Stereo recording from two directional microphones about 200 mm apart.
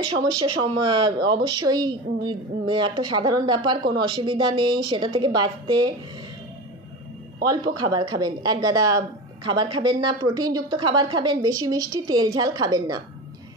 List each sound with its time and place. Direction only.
0.0 s speech: 25° right (ahead or behind)
7.4 s speech: 20° right (ahead or behind)